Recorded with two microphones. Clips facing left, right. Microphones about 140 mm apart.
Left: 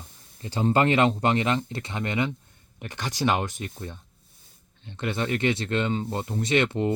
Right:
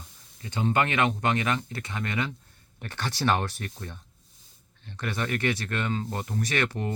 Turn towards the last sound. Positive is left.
turn(degrees=20)  # may be behind; listen again after turning